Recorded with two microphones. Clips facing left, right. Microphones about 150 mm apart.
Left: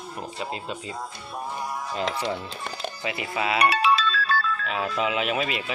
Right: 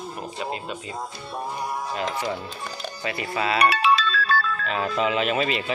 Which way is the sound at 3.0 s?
15° left (ahead or behind).